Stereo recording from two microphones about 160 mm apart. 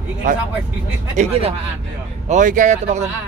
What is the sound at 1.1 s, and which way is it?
Speech, 40° right (ahead or behind).